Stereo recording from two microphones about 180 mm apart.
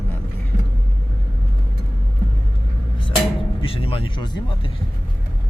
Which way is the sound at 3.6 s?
30° left (ahead or behind).